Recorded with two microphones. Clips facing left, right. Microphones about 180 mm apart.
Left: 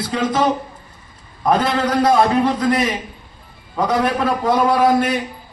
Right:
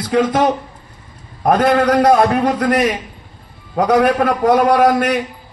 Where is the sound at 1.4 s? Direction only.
50° right (ahead or behind).